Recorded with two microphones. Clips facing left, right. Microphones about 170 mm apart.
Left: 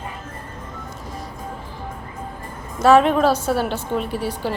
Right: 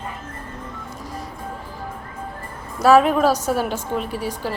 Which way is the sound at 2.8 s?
5° right (ahead or behind).